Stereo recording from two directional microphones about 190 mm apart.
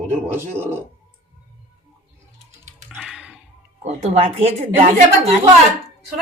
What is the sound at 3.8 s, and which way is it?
A woman's voice, 35° right (ahead or behind).